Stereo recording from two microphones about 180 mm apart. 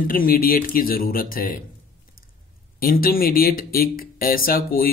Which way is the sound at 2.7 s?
55° left (ahead or behind).